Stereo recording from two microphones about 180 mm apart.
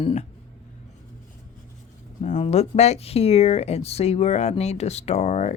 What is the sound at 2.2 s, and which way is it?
Speech, 40° left (ahead or behind).